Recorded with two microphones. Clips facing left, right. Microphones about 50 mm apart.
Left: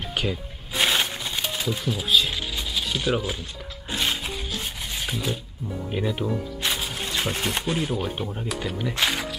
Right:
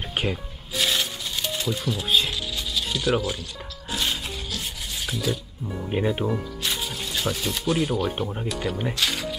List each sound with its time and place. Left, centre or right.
0.1 s music: centre
0.7 s rub: left; by 2.0 s centre
2.3 s a sound: centre
2.9 s speech: centre
3.9 s music: centre
5.0 s speech: left
5.9 s speech: right
6.6 s music: centre
7.2 s speech: left
7.7 s speech: centre
8.2 s speech: centre
8.5 s speech: centre
9.0 s speech: centre